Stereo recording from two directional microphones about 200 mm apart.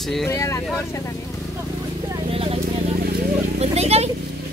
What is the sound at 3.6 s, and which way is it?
Speech, 30° right (ahead or behind).